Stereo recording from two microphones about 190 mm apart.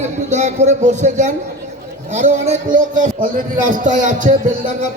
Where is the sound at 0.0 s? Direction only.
35° right (ahead or behind).